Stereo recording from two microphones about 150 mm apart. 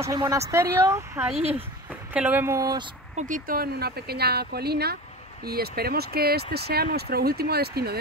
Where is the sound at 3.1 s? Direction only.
60° right (ahead or behind); by 8.0 s 90° right.